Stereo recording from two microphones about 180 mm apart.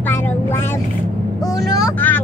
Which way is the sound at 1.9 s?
10° left (ahead or behind).